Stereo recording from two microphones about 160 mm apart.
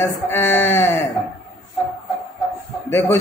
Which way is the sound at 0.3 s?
15° left (ahead or behind).